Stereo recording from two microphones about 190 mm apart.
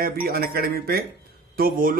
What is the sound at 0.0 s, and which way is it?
Speech, 55° right (ahead or behind).